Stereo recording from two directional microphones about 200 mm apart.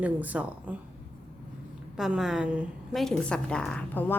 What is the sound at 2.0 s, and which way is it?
A woman's voice, centre (ahead or behind).